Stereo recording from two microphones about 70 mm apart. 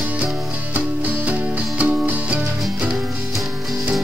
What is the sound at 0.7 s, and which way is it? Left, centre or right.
Music, right.